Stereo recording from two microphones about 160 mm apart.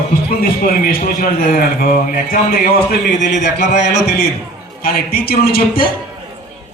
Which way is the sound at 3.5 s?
50° left (ahead or behind).